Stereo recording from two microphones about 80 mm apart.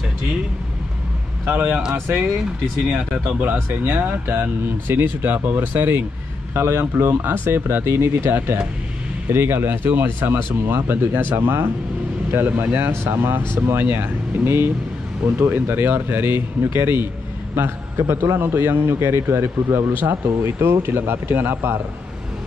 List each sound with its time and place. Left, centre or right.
1.4 s a man's voice: right
3.3 s speech: right